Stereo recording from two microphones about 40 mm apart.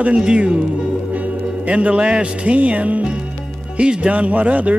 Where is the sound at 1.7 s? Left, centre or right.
Right.